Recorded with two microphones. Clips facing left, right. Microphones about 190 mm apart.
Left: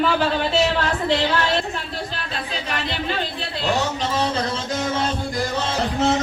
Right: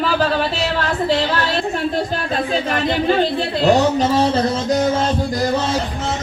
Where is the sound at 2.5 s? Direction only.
50° right (ahead or behind).